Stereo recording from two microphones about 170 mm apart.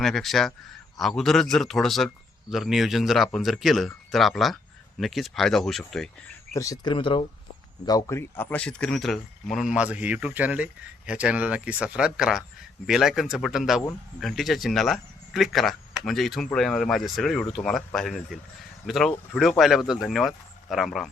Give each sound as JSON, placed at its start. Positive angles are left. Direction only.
{"t": 0.0, "sound": "speech", "side_deg": 0}
{"t": 6.5, "sound": "speech", "side_deg": 20}
{"t": 7.9, "sound": "speech", "side_deg": 20}